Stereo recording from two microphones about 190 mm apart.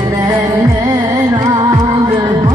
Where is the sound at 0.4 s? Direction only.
20° right (ahead or behind).